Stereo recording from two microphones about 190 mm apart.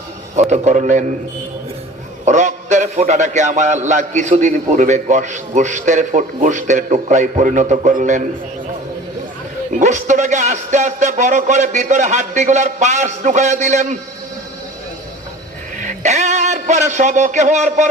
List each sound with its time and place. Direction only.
0.5 s a man's voice: 40° right (ahead or behind)
2.2 s a man's voice: 40° right (ahead or behind)
9.7 s a man's voice: 40° right (ahead or behind)
15.8 s speech: 40° right (ahead or behind)